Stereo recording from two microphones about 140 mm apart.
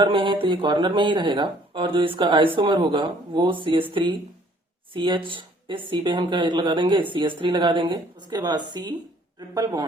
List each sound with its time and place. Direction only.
0.0 s speech: 35° right (ahead or behind)
4.9 s speech: 35° right (ahead or behind)